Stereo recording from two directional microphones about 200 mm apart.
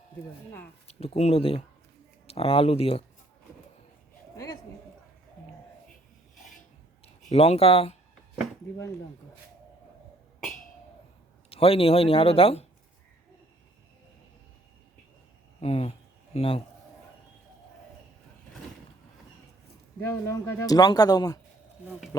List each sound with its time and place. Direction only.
0.9 s speech: 30° left (ahead or behind)
7.3 s speech: 30° left (ahead or behind)
11.4 s a man's voice: 30° left (ahead or behind)
15.6 s speech: 30° left (ahead or behind)
20.0 s a man's voice: 10° left (ahead or behind)